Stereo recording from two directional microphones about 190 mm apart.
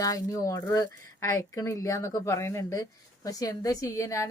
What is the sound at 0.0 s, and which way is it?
A woman's voice, 20° left (ahead or behind).